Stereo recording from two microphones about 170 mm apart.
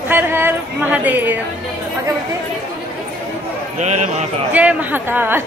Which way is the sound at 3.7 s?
45° right (ahead or behind).